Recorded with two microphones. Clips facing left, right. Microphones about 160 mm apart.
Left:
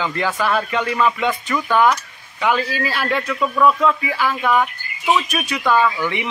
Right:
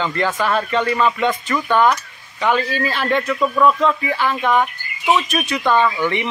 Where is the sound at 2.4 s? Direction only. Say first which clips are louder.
Right 1 dB; 5° left (ahead or behind).